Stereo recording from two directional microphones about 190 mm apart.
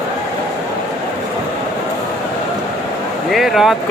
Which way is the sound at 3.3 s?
Centre (ahead or behind).